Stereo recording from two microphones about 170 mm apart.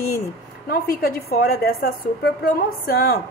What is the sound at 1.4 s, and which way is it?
Speech, 65° left (ahead or behind).